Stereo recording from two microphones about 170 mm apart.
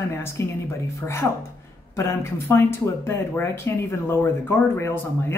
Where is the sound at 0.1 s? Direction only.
15° left (ahead or behind).